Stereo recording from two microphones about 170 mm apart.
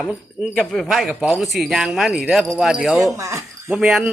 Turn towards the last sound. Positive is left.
turn(degrees=-5)  # may be behind; listen again after turning